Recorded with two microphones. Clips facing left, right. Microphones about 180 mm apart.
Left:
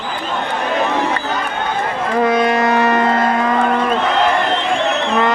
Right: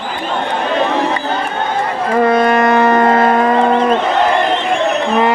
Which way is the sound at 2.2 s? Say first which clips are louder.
Right 3 dB; 55° right (ahead or behind).